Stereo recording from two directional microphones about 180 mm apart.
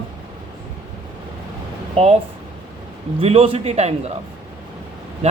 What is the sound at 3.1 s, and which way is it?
Speech, 30° right (ahead or behind).